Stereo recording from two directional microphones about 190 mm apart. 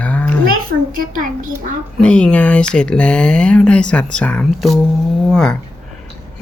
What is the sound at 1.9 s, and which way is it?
Speech, 5° left (ahead or behind).